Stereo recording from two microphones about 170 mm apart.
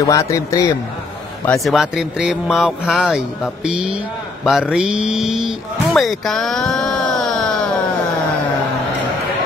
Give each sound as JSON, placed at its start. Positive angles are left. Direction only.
{"t": 0.0, "sound": "a man's voice", "side_deg": 20}
{"t": 1.6, "sound": "speech", "side_deg": 0}